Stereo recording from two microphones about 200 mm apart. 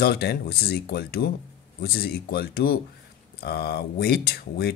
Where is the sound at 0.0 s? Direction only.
55° left (ahead or behind).